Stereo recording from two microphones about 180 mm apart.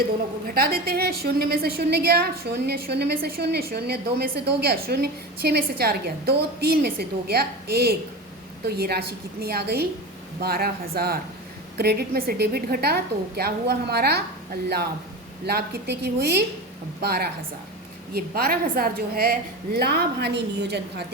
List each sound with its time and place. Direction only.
0.0 s a woman's voice: 55° right (ahead or behind)
15.4 s a woman's voice: 60° right (ahead or behind)